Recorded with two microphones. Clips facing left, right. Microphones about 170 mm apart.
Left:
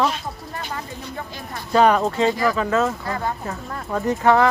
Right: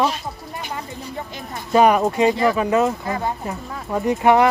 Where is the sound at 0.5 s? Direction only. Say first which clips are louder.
Right 1 dB; 15° right (ahead or behind).